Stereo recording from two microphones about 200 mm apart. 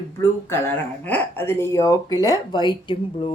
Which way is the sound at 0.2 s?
10° left (ahead or behind).